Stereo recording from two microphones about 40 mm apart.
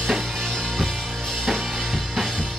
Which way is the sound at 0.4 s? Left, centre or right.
Centre.